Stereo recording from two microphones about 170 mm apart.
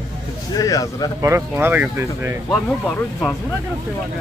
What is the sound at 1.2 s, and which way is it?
Speech, 15° right (ahead or behind).